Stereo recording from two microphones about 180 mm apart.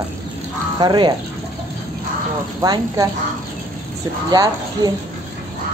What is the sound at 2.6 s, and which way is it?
Speech, 20° right (ahead or behind).